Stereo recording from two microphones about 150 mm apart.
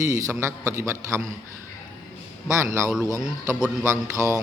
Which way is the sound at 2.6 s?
20° right (ahead or behind).